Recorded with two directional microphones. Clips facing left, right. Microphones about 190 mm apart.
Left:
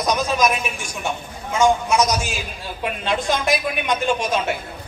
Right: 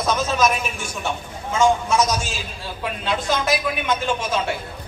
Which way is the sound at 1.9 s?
15° left (ahead or behind).